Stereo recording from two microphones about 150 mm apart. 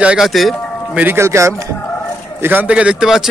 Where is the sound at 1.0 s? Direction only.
15° right (ahead or behind).